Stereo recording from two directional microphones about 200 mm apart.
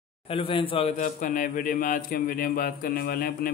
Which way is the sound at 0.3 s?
25° left (ahead or behind).